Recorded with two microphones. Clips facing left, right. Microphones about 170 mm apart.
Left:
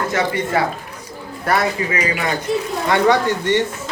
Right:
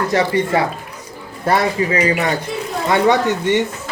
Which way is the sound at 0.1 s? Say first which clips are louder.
Right 3 dB; 30° right (ahead or behind).